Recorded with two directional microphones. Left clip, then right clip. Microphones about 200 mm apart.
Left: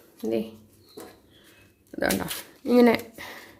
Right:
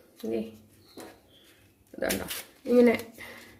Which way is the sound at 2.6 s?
40° left (ahead or behind).